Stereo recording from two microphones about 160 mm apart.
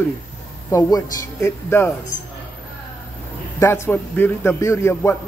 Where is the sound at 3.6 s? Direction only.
15° left (ahead or behind).